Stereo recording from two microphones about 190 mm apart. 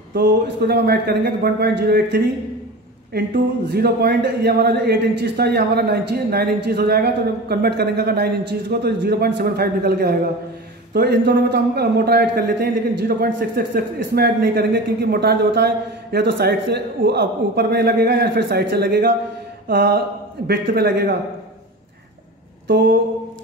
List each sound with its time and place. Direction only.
0.1 s speech: 55° right (ahead or behind)